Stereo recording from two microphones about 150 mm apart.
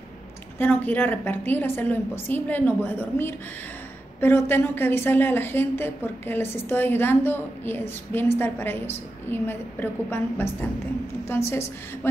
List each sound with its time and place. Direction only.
0.6 s a woman's voice: 10° left (ahead or behind)